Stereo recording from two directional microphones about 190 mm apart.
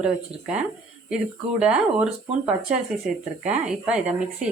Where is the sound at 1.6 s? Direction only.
5° right (ahead or behind).